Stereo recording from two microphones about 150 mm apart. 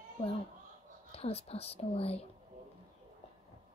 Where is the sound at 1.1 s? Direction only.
40° left (ahead or behind).